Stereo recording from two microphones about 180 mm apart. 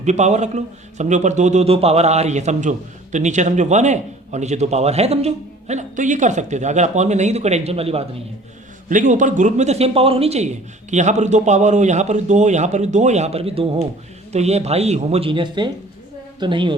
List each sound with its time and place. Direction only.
0.0 s a man's voice: 40° right (ahead or behind)
8.9 s a man's voice: 45° right (ahead or behind); by 16.7 s 25° right (ahead or behind)